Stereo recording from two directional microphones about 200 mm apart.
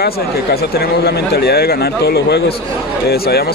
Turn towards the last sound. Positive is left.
turn(degrees=50)  # may be behind; listen again after turning